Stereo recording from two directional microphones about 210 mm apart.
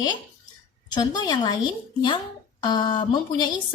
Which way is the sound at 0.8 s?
20° left (ahead or behind).